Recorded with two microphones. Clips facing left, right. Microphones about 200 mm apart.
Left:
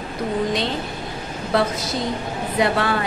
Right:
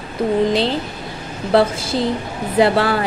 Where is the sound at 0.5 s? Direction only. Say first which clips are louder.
Right 5 dB; 30° right (ahead or behind).